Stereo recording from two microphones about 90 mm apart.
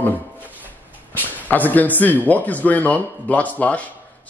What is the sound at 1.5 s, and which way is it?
Speech, 20° left (ahead or behind).